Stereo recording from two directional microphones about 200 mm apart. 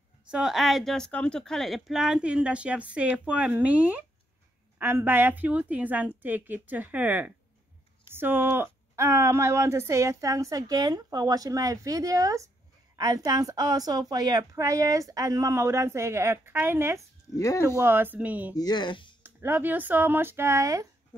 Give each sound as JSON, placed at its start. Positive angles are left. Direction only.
{"t": 0.3, "sound": "a woman's voice", "side_deg": 0}
{"t": 17.4, "sound": "speech", "side_deg": 15}
{"t": 17.7, "sound": "speech", "side_deg": -10}
{"t": 18.5, "sound": "speech", "side_deg": 20}
{"t": 19.2, "sound": "speech", "side_deg": -10}